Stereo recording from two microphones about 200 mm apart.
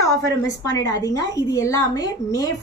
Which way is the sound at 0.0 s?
15° left (ahead or behind).